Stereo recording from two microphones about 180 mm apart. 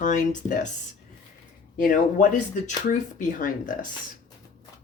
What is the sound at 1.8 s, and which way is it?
Speech, 50° left (ahead or behind).